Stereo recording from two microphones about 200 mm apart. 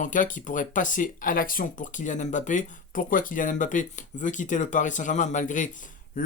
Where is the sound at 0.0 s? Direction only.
40° left (ahead or behind).